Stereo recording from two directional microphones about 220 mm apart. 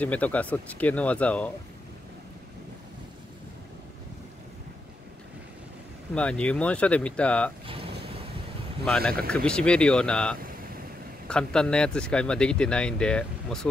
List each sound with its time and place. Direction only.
0.0 s speech: 5° left (ahead or behind)
6.1 s speech: 5° left (ahead or behind)
7.6 s vehicle: 25° right (ahead or behind)
8.8 s speech: 5° left (ahead or behind)